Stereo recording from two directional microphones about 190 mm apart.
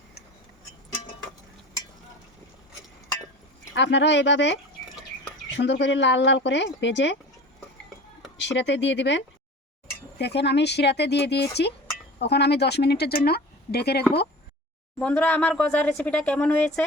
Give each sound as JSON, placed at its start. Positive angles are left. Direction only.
{"t": 3.8, "sound": "speech", "side_deg": 65}
{"t": 8.4, "sound": "speech", "side_deg": 70}
{"t": 14.9, "sound": "speech", "side_deg": 5}